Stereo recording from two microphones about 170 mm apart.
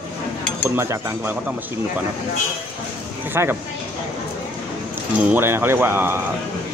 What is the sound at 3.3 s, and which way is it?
Speech, 15° right (ahead or behind).